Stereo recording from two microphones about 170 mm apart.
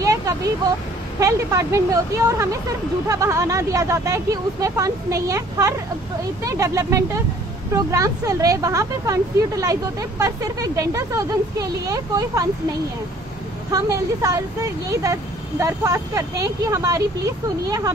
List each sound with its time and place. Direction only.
0.0 s a sound: 20° right (ahead or behind)
1.2 s speech: 20° right (ahead or behind)
13.7 s speech: 20° right (ahead or behind)